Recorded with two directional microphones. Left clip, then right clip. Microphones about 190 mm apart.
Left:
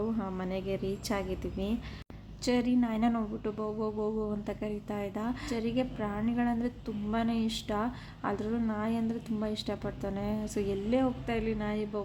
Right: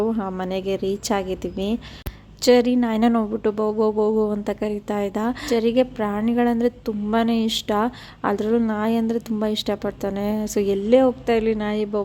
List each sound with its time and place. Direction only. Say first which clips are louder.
0.0 s speech: right 11 dB; 30° right (ahead or behind)